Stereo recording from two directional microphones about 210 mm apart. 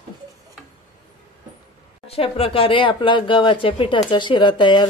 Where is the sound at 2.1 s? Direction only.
25° left (ahead or behind).